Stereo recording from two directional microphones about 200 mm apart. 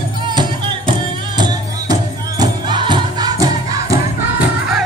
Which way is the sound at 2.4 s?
25° right (ahead or behind).